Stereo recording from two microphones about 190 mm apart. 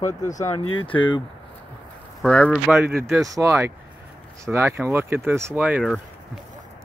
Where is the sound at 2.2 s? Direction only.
5° left (ahead or behind).